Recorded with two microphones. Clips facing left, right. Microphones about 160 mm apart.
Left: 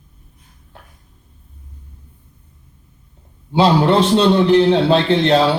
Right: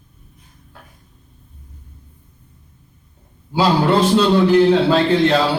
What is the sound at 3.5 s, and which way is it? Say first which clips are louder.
A man's voice: left 2 dB; 25° left (ahead or behind).